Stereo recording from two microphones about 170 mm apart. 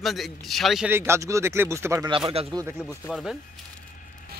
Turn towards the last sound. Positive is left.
turn(degrees=0)  # may be behind; listen again after turning